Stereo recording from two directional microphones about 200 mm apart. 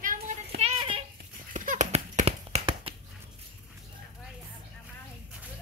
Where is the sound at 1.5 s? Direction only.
40° right (ahead or behind).